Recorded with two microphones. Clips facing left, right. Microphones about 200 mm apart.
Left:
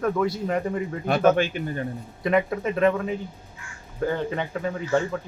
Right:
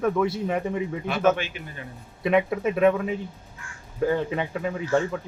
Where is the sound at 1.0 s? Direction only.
40° left (ahead or behind).